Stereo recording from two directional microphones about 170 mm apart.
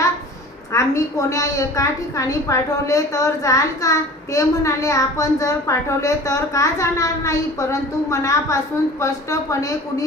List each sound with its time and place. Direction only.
0.7 s a woman's voice: 20° left (ahead or behind)